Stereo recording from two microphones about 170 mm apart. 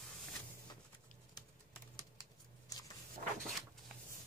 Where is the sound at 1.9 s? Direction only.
20° left (ahead or behind).